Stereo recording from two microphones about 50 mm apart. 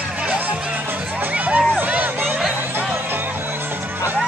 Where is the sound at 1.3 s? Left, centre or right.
Right.